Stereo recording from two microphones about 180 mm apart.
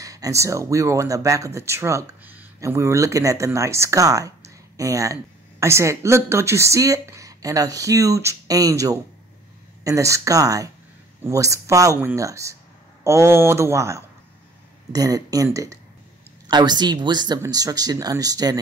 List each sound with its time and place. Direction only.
0.0 s speech: 20° right (ahead or behind)